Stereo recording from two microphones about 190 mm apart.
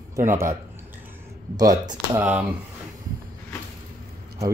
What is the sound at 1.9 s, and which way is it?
Speech, 10° right (ahead or behind).